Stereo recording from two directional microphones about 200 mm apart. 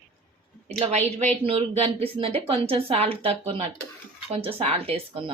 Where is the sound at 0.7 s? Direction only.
35° right (ahead or behind).